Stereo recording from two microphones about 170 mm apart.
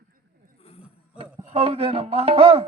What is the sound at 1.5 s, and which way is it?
Music, 35° right (ahead or behind).